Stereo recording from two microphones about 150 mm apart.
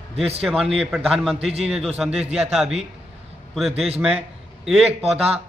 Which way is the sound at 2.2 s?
45° right (ahead or behind).